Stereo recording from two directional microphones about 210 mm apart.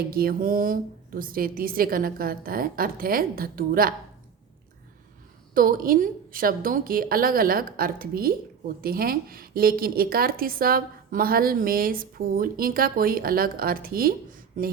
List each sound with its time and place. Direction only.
0.1 s a woman's voice: 45° right (ahead or behind)
5.5 s a woman's voice: 40° right (ahead or behind)